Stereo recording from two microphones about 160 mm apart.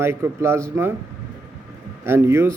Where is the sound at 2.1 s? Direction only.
15° right (ahead or behind).